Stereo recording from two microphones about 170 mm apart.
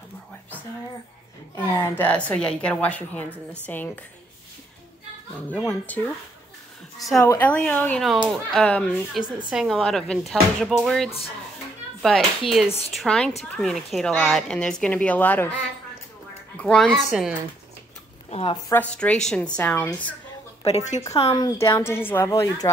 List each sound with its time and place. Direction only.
1.5 s speech: 15° left (ahead or behind)
5.5 s speech: 10° left (ahead or behind)
16.5 s speech: 5° left (ahead or behind)
18.3 s a woman's voice: 30° left (ahead or behind)
18.7 s speech: 10° left (ahead or behind)
20.6 s a woman's voice: 40° left (ahead or behind)
21.3 s speech: 20° left (ahead or behind)